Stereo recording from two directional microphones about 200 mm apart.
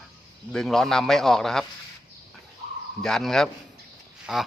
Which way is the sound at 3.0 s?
Centre (ahead or behind).